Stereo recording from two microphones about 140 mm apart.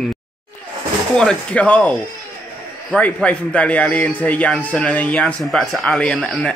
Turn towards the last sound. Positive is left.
turn(degrees=5)  # may be behind; listen again after turning